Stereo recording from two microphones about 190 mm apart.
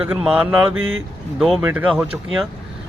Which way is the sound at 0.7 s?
90° right.